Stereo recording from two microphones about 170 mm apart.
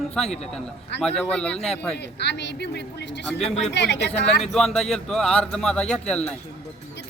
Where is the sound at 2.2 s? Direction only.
90° left.